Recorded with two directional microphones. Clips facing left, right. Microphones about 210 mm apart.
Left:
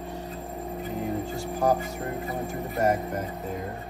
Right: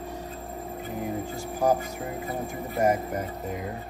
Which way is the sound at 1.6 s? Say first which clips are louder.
Right 1 dB; 5° right (ahead or behind).